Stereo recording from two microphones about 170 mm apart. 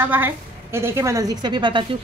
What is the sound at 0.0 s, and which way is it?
A woman's voice, 10° right (ahead or behind).